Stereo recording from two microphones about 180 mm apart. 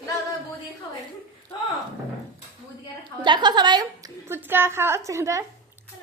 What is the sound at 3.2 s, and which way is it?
Speech, 25° right (ahead or behind).